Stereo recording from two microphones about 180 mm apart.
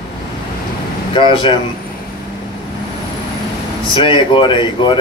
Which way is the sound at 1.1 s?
25° left (ahead or behind).